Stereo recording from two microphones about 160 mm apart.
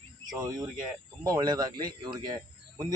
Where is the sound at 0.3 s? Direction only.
25° right (ahead or behind).